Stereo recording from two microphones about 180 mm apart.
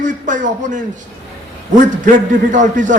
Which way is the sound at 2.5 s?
45° right (ahead or behind).